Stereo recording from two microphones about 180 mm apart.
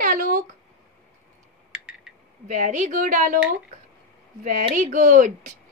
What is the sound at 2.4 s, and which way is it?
Speech, 45° right (ahead or behind).